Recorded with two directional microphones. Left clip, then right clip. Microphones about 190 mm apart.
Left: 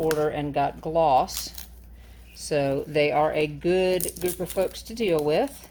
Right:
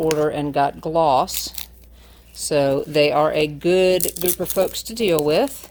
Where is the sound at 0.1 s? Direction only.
40° right (ahead or behind).